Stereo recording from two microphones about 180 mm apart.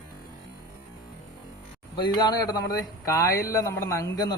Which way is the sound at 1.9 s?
25° left (ahead or behind).